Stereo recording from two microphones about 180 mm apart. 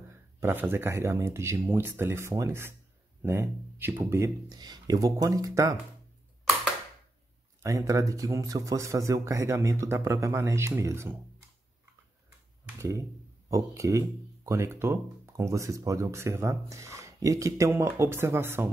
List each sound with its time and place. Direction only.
0.1 s speech: 15° right (ahead or behind)
7.6 s speech: 20° right (ahead or behind)
12.6 s speech: 15° right (ahead or behind)